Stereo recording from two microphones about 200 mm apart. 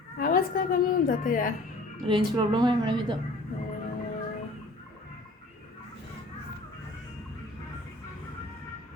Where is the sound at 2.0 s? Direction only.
25° right (ahead or behind).